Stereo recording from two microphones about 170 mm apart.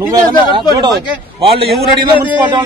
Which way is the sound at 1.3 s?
35° right (ahead or behind).